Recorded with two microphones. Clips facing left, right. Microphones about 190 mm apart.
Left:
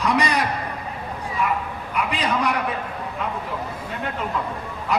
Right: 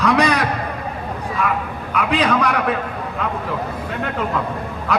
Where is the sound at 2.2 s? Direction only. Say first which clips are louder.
Right 4 dB; 90° right.